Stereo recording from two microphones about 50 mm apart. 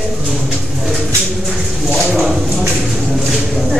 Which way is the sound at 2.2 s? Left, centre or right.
Centre.